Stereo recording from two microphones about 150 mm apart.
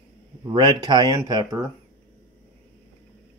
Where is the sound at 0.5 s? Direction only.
30° right (ahead or behind).